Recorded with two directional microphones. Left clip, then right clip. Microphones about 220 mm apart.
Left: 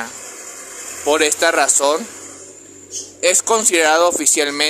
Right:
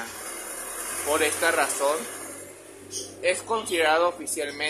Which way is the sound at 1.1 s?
50° left (ahead or behind).